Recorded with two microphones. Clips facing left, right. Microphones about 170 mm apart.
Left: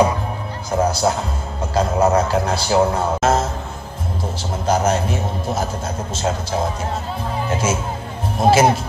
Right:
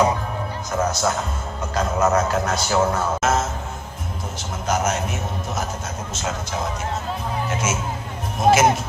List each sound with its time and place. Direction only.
0.7 s a man's voice: 30° left (ahead or behind)
4.6 s a man's voice: 30° left (ahead or behind)